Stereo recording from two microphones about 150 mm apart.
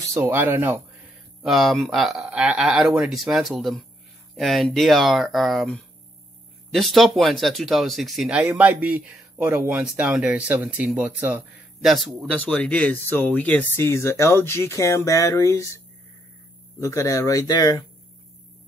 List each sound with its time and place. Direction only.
0.1 s speech: 15° right (ahead or behind)
1.4 s speech: centre (ahead or behind); by 15.8 s 20° left (ahead or behind)
16.8 s speech: 20° left (ahead or behind)